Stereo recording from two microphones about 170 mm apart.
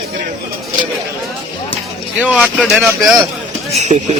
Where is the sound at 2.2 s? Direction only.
5° right (ahead or behind).